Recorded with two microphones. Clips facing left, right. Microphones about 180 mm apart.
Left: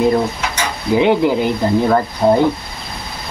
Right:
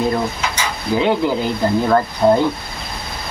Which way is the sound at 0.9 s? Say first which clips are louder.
Left 4 dB; 20° left (ahead or behind).